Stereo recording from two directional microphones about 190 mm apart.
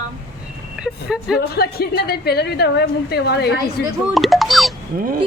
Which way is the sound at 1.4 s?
55° left (ahead or behind).